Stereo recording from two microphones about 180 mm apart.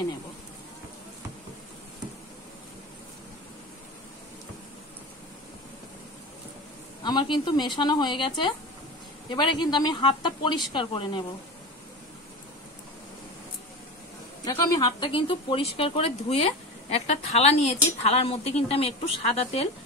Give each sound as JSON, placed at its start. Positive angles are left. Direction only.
{"t": 7.0, "sound": "speech", "side_deg": 25}
{"t": 14.4, "sound": "speech", "side_deg": 25}